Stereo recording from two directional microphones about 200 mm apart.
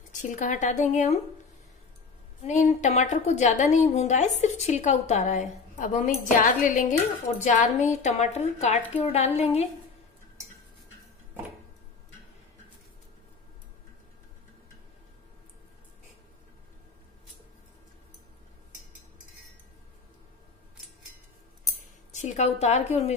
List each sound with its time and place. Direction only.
0.2 s a woman's voice: 40° left (ahead or behind)
2.4 s a woman's voice: 35° left (ahead or behind)
21.6 s a sound: 35° left (ahead or behind)